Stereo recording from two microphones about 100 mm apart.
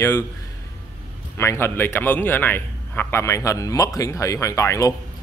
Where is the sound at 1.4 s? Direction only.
25° left (ahead or behind).